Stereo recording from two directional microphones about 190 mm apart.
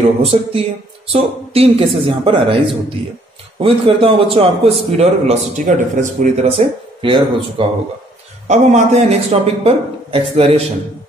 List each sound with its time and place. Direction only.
0.2 s a woman's voice: 30° right (ahead or behind)